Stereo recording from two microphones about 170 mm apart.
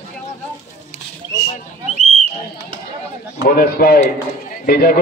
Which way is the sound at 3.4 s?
60° left (ahead or behind).